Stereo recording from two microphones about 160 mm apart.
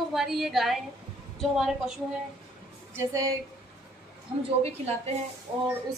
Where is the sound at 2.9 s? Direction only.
20° right (ahead or behind).